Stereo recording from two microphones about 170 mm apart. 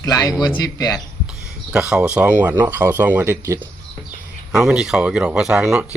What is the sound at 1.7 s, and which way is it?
Speech, 5° right (ahead or behind).